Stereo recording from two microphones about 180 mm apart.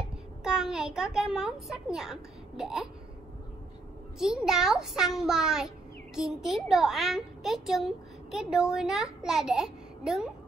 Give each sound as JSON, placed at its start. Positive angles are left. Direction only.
{"t": 0.4, "sound": "a child's voice", "side_deg": -5}
{"t": 4.2, "sound": "a child's voice", "side_deg": -5}